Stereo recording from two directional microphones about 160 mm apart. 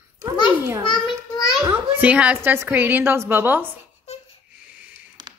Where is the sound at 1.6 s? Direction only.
10° right (ahead or behind).